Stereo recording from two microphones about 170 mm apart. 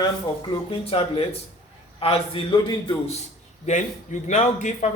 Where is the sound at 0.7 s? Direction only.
35° left (ahead or behind).